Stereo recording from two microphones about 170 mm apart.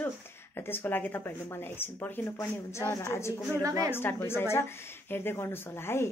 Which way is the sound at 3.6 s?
20° right (ahead or behind).